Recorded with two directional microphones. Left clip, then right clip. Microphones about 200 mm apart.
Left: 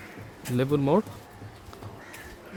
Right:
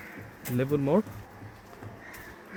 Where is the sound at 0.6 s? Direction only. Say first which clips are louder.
Left 2 dB; 10° left (ahead or behind).